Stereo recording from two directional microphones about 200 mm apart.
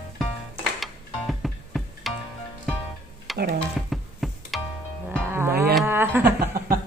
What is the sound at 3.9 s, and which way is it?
Music, centre (ahead or behind).